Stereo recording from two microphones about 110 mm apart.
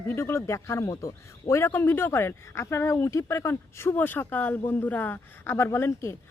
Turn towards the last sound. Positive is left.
turn(degrees=25)  # may be behind; listen again after turning